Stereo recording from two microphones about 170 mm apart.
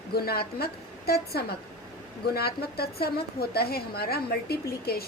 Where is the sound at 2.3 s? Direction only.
65° left (ahead or behind).